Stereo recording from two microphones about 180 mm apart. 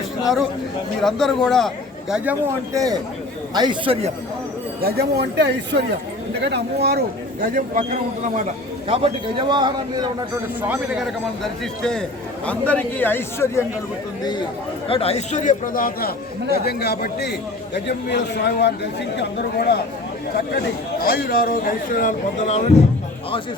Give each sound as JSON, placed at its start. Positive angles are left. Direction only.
{"t": 1.0, "sound": "speech", "side_deg": 0}
{"t": 2.7, "sound": "a man's voice", "side_deg": -20}
{"t": 4.8, "sound": "speech", "side_deg": -60}
{"t": 7.4, "sound": "a man's voice", "side_deg": -50}
{"t": 8.9, "sound": "a man's voice", "side_deg": -30}
{"t": 10.6, "sound": "a man's voice", "side_deg": -5}
{"t": 14.8, "sound": "a man's voice", "side_deg": 35}